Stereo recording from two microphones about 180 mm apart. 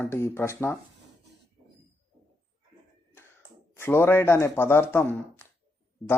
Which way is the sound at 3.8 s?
15° left (ahead or behind).